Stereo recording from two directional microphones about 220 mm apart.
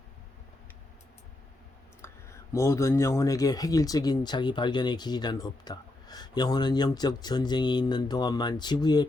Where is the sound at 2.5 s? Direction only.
15° left (ahead or behind).